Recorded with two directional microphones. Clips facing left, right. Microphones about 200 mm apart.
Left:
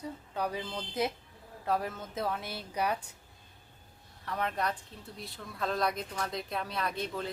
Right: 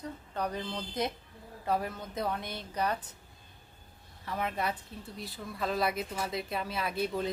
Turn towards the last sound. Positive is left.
turn(degrees=-10)  # may be behind; listen again after turning